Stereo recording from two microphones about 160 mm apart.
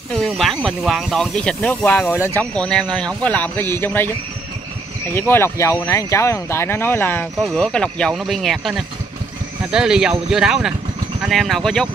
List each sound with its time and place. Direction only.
0.1 s speech: centre (ahead or behind)
5.1 s speech: 15° left (ahead or behind)